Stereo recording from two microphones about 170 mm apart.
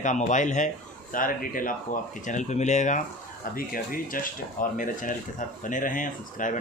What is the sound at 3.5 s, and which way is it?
Speech, 55° left (ahead or behind).